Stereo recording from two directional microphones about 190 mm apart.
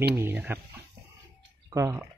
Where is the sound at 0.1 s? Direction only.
10° right (ahead or behind).